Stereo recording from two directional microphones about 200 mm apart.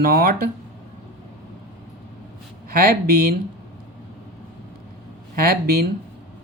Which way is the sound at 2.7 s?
50° right (ahead or behind).